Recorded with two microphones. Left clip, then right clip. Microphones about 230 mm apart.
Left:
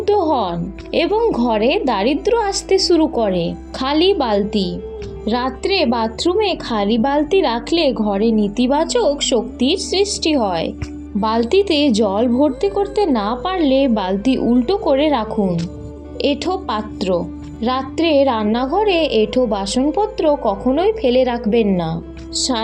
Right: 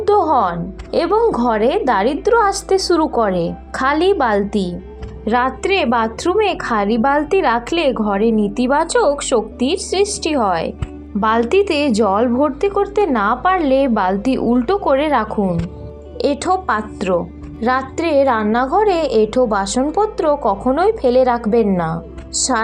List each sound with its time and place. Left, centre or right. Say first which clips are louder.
0.0 s a woman's voice: right 2 dB; centre
8.2 s a woman's voice: right 1 dB; right
8.5 s a woman's voice: right 2 dB; centre